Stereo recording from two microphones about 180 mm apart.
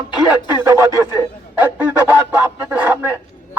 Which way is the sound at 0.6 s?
15° right (ahead or behind).